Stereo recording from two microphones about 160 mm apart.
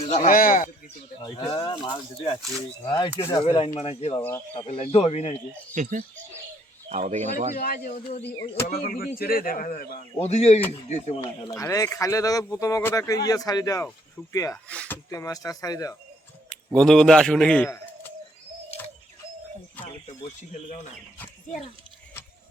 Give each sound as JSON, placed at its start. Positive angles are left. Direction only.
{"t": 0.1, "sound": "speech", "side_deg": 50}
{"t": 1.2, "sound": "speech", "side_deg": 25}
{"t": 2.8, "sound": "speech", "side_deg": 25}
{"t": 3.4, "sound": "speech", "side_deg": 35}
{"t": 4.2, "sound": "speech", "side_deg": 15}
{"t": 4.6, "sound": "speech", "side_deg": 35}
{"t": 5.7, "sound": "speech", "side_deg": -50}
{"t": 7.5, "sound": "speech", "side_deg": 60}
{"t": 10.2, "sound": "speech", "side_deg": 40}
{"t": 11.5, "sound": "speech", "side_deg": 20}
{"t": 14.7, "sound": "speech", "side_deg": 10}
{"t": 15.1, "sound": "speech", "side_deg": 20}
{"t": 16.5, "sound": "a man's voice", "side_deg": 5}
{"t": 17.7, "sound": "bird", "side_deg": 15}